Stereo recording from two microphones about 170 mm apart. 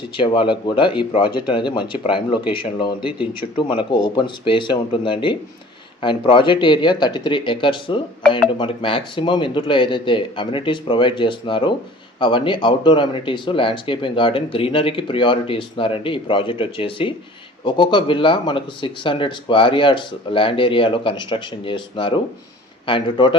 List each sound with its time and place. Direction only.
0.2 s speech: 30° left (ahead or behind)
3.0 s speech: 5° right (ahead or behind)
3.5 s speech: 30° left (ahead or behind)